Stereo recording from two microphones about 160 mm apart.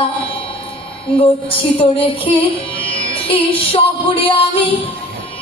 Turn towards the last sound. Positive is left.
turn(degrees=35)  # may be behind; listen again after turning